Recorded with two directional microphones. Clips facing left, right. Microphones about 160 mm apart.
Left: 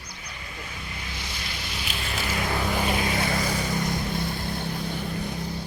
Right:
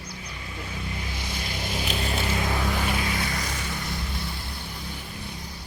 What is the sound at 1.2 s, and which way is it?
Vehicle, 50° right (ahead or behind).